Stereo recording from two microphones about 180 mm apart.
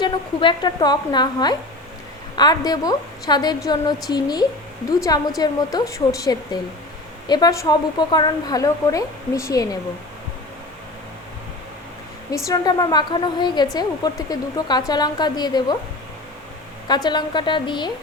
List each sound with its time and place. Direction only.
0.0 s a woman's voice: 25° left (ahead or behind)
12.3 s a woman's voice: 20° left (ahead or behind)
16.9 s a woman's voice: 25° left (ahead or behind)